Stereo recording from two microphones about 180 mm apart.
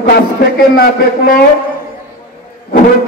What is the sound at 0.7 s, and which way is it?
Speech, 55° left (ahead or behind).